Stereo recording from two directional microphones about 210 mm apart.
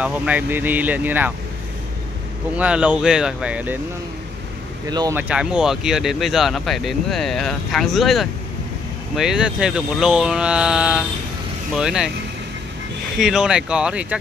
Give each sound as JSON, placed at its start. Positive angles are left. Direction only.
{"t": 0.0, "sound": "speech", "side_deg": -5}
{"t": 2.5, "sound": "speech", "side_deg": -5}
{"t": 4.8, "sound": "speech", "side_deg": -15}
{"t": 5.3, "sound": "speech", "side_deg": -5}
{"t": 13.2, "sound": "speech", "side_deg": -5}